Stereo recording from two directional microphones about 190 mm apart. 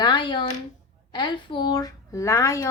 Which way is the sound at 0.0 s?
25° left (ahead or behind).